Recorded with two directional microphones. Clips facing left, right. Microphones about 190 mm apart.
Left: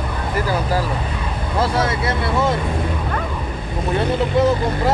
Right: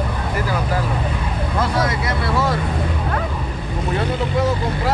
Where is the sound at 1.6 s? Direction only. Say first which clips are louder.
Left 2 dB; 30° left (ahead or behind).